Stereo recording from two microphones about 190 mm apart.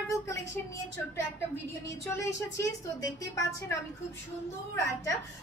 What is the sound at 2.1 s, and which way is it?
A woman's voice, 15° left (ahead or behind).